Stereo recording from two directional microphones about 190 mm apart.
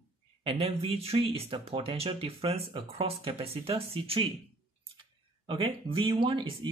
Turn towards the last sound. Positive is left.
turn(degrees=-25)  # may be behind; listen again after turning